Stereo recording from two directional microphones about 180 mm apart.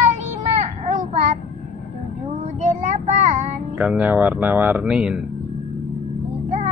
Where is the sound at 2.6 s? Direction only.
40° right (ahead or behind).